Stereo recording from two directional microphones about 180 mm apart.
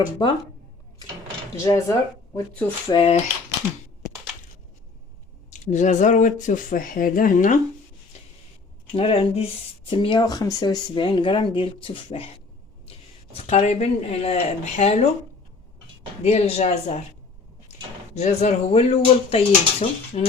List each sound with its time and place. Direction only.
0.0 s speech: 25° left (ahead or behind)
1.6 s speech: 20° left (ahead or behind)
2.9 s speech: 30° left (ahead or behind)
5.5 s speech: 40° left (ahead or behind)
8.9 s speech: 30° left (ahead or behind)
13.3 s speech: 40° left (ahead or behind)
16.2 s speech: 35° left (ahead or behind)